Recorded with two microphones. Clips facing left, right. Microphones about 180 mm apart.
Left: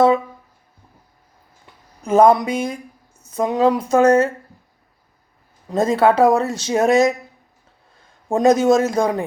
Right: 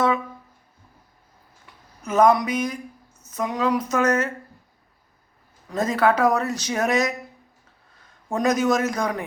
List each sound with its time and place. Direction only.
2.0 s speech: 30° left (ahead or behind)
5.6 s a man's voice: 25° left (ahead or behind)